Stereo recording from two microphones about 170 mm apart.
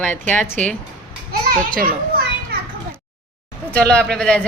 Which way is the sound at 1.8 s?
60° right (ahead or behind).